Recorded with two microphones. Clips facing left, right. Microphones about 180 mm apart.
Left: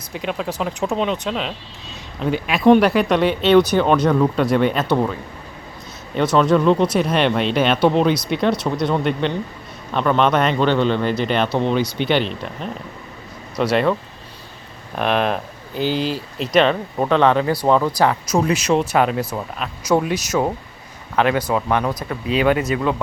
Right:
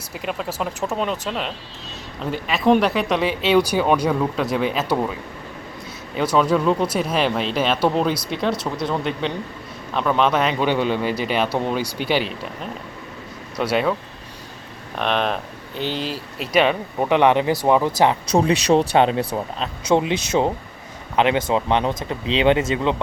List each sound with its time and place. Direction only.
0.1 s speech: centre (ahead or behind)
6.3 s speech: 5° right (ahead or behind)
13.6 s speech: 5° right (ahead or behind)
14.9 s speech: 5° left (ahead or behind); by 18.2 s 20° right (ahead or behind)
18.3 s speech: 35° right (ahead or behind)